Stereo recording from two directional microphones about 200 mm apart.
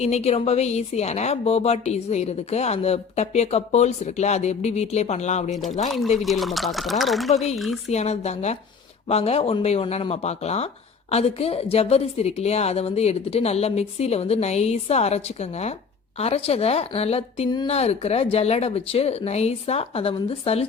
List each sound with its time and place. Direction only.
0.0 s speech: 35° left (ahead or behind)
6.2 s speech: centre (ahead or behind)
7.9 s speech: 35° left (ahead or behind)